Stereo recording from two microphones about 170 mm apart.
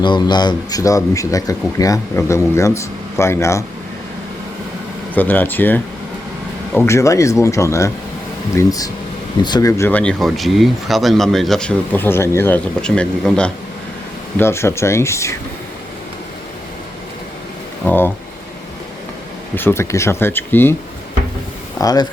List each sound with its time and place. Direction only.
0.0 s speech: 25° left (ahead or behind)
5.1 s speech: 10° left (ahead or behind)
17.8 s speech: 10° left (ahead or behind)
19.5 s speech: 15° left (ahead or behind)
21.8 s speech: 20° left (ahead or behind)